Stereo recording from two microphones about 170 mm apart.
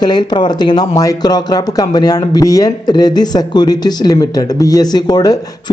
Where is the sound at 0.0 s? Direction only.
25° left (ahead or behind).